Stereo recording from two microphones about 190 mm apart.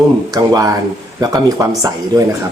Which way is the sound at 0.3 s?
20° right (ahead or behind).